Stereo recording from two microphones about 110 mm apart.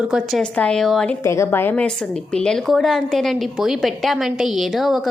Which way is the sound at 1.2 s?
25° left (ahead or behind).